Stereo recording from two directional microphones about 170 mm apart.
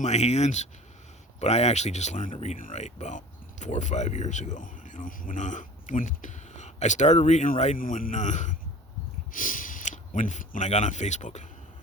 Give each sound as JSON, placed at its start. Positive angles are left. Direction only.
{"t": 0.0, "sound": "speech", "side_deg": 40}